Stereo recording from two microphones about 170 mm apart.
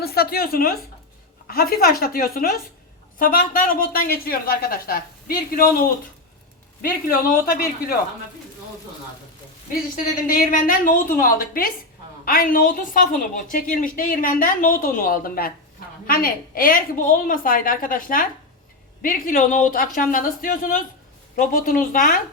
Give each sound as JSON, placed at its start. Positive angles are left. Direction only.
{"t": 0.0, "sound": "a woman's voice", "side_deg": 65}
{"t": 6.8, "sound": "a woman's voice", "side_deg": 55}
{"t": 9.9, "sound": "a woman's voice", "side_deg": 55}